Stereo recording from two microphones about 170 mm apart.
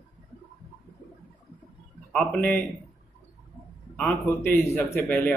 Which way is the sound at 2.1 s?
5° left (ahead or behind).